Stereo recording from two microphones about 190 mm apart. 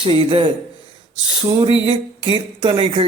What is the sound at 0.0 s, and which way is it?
Speech, 30° right (ahead or behind).